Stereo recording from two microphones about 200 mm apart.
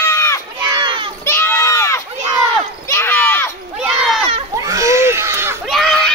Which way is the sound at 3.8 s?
Centre (ahead or behind).